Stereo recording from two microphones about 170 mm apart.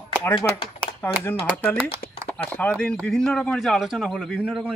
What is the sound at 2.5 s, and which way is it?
Speech, 5° left (ahead or behind).